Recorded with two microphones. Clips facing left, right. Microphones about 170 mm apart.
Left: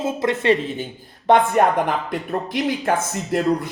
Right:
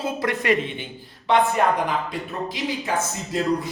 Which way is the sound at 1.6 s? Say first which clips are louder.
Left 3 dB; 55° left (ahead or behind).